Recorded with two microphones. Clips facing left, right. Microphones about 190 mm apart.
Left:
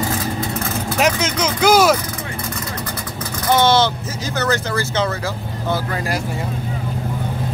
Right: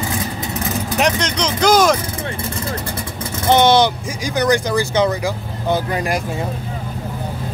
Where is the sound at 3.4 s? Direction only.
20° right (ahead or behind).